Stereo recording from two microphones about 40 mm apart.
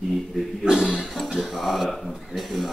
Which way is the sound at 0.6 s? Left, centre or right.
Centre.